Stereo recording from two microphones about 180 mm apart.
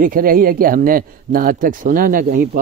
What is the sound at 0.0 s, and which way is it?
Speech, 50° right (ahead or behind).